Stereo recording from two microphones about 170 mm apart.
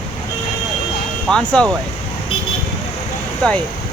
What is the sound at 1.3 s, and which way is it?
Speech, 5° left (ahead or behind).